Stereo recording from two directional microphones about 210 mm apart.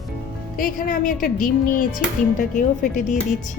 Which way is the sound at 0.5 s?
40° left (ahead or behind).